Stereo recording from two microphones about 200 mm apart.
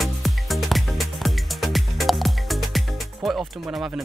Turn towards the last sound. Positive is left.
turn(degrees=0)  # may be behind; listen again after turning